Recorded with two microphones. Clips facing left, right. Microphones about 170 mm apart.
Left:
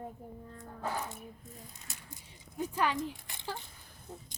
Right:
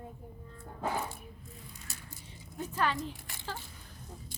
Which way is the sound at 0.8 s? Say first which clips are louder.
Right 3 dB; 15° right (ahead or behind).